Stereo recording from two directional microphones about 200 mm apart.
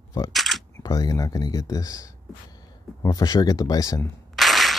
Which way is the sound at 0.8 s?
15° left (ahead or behind).